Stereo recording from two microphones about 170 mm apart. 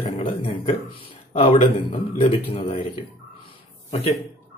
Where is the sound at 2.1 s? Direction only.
35° left (ahead or behind).